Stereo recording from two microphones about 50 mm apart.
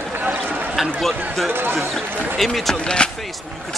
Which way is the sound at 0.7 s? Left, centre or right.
Centre.